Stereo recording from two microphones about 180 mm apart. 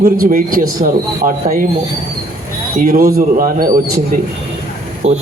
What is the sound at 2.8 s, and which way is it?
Speech, 55° right (ahead or behind).